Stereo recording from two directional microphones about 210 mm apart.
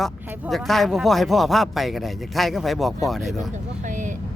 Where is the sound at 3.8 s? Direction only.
35° right (ahead or behind).